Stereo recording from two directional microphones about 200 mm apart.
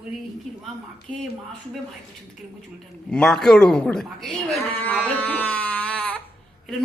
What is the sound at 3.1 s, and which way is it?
Speech, centre (ahead or behind).